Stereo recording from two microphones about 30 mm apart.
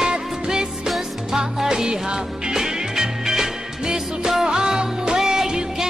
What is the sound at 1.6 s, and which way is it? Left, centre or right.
Music, centre.